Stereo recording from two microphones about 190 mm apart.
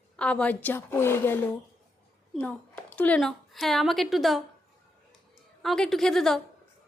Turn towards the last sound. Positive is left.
turn(degrees=0)  # may be behind; listen again after turning